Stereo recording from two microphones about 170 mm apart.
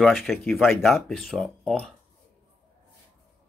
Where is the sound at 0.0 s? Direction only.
Centre (ahead or behind).